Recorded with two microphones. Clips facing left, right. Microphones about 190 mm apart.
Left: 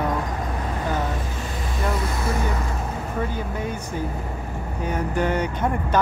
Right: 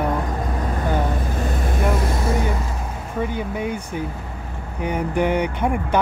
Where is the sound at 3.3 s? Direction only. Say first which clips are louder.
Right 3 dB; 15° right (ahead or behind).